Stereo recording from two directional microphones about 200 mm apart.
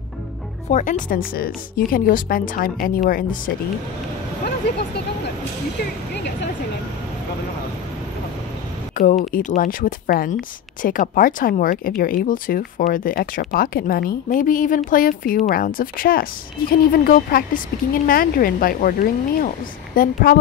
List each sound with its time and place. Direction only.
0.7 s speech: 40° left (ahead or behind)
4.5 s speech: 55° left (ahead or behind)
8.9 s speech: 40° left (ahead or behind)